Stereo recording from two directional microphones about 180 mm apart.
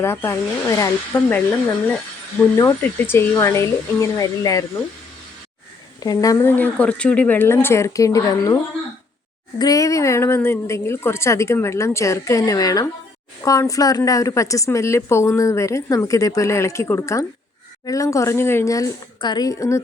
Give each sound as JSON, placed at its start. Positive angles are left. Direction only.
{"t": 0.0, "sound": "a woman's voice", "side_deg": 15}
{"t": 2.6, "sound": "a woman's voice", "side_deg": 15}
{"t": 6.0, "sound": "a woman's voice", "side_deg": 20}
{"t": 9.6, "sound": "a woman's voice", "side_deg": 20}